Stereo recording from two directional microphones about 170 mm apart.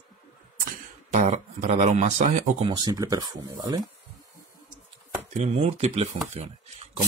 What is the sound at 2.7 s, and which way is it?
Speech, 20° right (ahead or behind).